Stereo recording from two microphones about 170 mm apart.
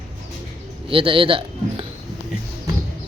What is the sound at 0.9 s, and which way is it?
Speech, 30° right (ahead or behind).